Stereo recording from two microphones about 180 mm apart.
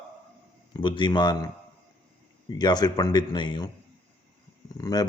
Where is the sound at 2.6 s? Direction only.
25° left (ahead or behind).